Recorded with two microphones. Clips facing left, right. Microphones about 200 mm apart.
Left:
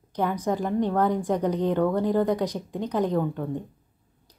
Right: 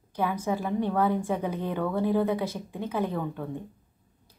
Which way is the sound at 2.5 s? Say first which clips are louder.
Left 4 dB; 15° left (ahead or behind).